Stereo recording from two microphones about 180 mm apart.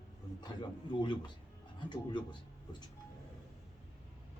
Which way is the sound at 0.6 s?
25° left (ahead or behind).